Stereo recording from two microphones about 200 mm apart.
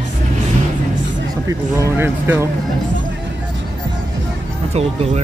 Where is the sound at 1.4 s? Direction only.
15° right (ahead or behind).